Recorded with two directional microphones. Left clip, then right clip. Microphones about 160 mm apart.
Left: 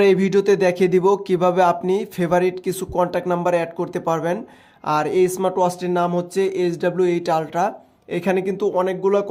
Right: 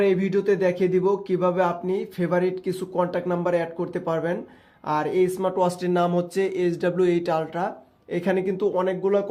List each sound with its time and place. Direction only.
0.0 s speech: 45° left (ahead or behind)
5.6 s speech: 15° left (ahead or behind)